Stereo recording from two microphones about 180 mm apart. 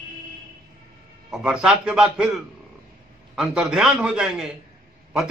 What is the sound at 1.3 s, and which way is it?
A man's voice, 5° right (ahead or behind).